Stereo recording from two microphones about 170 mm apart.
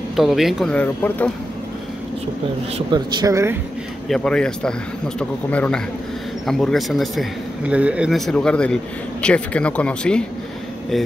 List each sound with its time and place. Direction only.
0.1 s speech: centre (ahead or behind)
0.7 s speech: 10° left (ahead or behind)
2.9 s speech: 25° right (ahead or behind)
4.1 s speech: 5° left (ahead or behind)
8.3 s speech: 5° left (ahead or behind)